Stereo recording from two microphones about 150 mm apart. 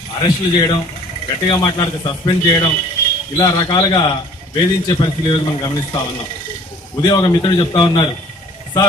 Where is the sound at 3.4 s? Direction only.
25° left (ahead or behind).